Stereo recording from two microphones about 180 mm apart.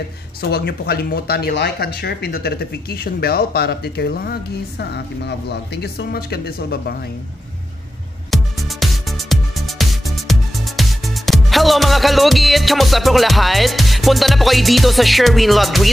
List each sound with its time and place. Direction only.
0.4 s speech: 60° left (ahead or behind)
8.3 s music: centre (ahead or behind)